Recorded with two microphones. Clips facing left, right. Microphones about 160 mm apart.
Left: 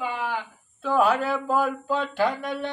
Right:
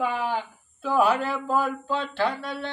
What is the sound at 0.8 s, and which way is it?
A man's voice, 5° right (ahead or behind).